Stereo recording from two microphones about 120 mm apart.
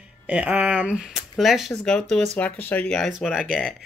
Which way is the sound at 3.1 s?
5° right (ahead or behind).